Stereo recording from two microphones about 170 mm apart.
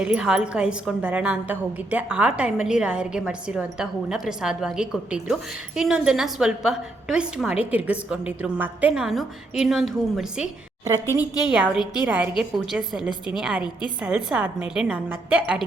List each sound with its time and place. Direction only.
0.0 s a woman's voice: 5° right (ahead or behind)
11.2 s a woman's voice: 25° left (ahead or behind)
11.5 s a woman's voice: 5° right (ahead or behind)